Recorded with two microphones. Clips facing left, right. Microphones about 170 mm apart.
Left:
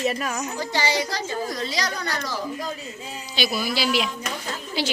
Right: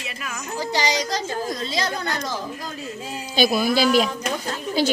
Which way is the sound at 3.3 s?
50° right (ahead or behind).